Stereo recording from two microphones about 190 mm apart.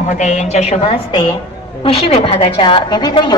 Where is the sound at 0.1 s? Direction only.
40° left (ahead or behind).